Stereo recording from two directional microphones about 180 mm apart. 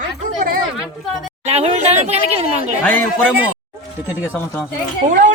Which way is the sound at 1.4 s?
35° right (ahead or behind).